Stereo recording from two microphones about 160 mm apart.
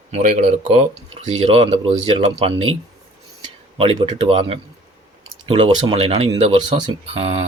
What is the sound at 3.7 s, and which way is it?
Speech, 35° right (ahead or behind).